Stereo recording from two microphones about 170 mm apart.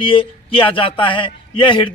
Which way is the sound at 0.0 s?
30° left (ahead or behind).